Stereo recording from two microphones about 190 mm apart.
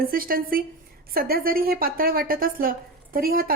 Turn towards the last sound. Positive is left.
turn(degrees=-50)  # may be behind; listen again after turning